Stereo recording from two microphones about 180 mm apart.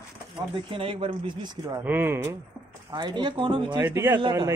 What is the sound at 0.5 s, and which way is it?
Speech, 30° right (ahead or behind).